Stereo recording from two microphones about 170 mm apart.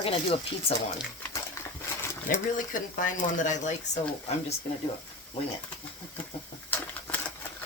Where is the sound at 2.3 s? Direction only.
55° left (ahead or behind).